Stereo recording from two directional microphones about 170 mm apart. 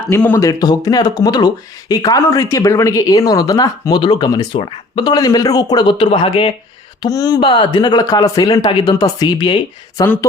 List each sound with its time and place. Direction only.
0.1 s speech: 10° left (ahead or behind)